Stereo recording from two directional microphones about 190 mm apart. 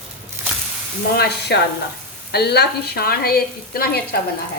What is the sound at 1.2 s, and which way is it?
A woman's voice, 60° left (ahead or behind).